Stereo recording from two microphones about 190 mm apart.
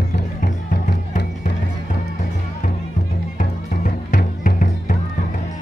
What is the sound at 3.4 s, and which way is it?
Music, 40° left (ahead or behind).